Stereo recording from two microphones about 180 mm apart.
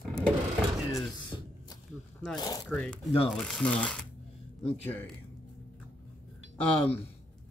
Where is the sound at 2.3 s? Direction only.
20° left (ahead or behind).